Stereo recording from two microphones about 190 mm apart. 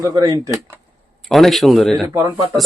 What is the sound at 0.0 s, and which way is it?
Speech, 20° right (ahead or behind).